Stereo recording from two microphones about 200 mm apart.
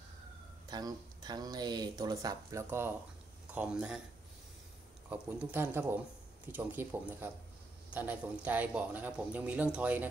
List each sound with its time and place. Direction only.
0.7 s speech: 20° right (ahead or behind); by 4.0 s 5° right (ahead or behind)
5.1 s a man's voice: 10° right (ahead or behind)